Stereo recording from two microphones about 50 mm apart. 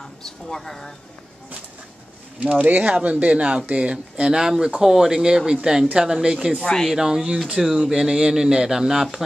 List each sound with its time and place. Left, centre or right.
0.2 s speech: centre
2.4 s speech: right; by 6.5 s centre
6.6 s speech: centre
6.9 s speech: centre